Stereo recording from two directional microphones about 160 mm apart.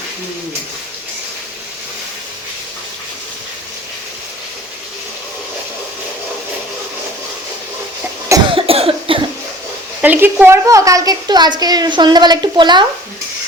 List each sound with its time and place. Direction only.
8.5 s cough: 35° right (ahead or behind)
10.0 s a woman's voice: 10° right (ahead or behind); by 12.8 s 30° right (ahead or behind)